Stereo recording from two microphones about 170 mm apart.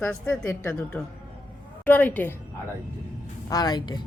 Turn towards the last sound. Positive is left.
turn(degrees=25)  # may be behind; listen again after turning